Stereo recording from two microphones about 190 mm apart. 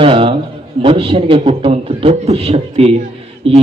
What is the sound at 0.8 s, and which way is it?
A man's voice, 30° right (ahead or behind).